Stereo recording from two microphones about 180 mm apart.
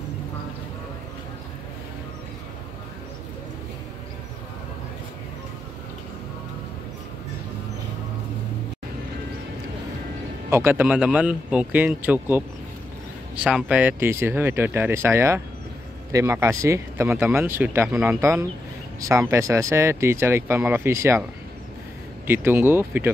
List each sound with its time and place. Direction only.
10.5 s speech: 10° right (ahead or behind)
17.8 s speech: centre (ahead or behind)
18.2 s speech: 15° right (ahead or behind)